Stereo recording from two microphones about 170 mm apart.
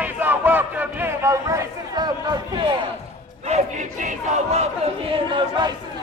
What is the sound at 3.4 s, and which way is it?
Crowd, 40° right (ahead or behind).